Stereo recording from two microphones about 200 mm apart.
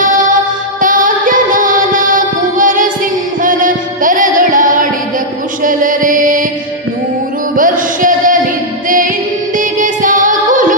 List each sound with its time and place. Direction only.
0.8 s music: 40° right (ahead or behind)
5.6 s mantra: 40° right (ahead or behind)
7.5 s music: 40° right (ahead or behind)
9.6 s child singing: 40° right (ahead or behind)